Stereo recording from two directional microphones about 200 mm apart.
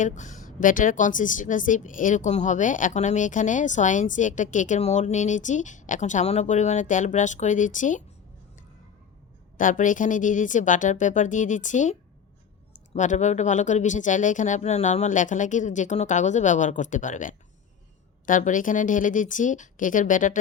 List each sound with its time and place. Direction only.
0.0 s a woman's voice: 40° left (ahead or behind)
9.6 s a woman's voice: 40° left (ahead or behind)